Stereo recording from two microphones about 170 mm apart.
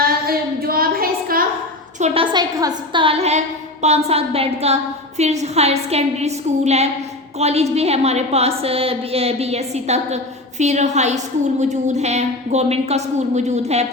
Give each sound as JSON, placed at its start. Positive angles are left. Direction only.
{"t": 0.0, "sound": "child singing", "side_deg": -60}
{"t": 2.0, "sound": "a woman's voice", "side_deg": -30}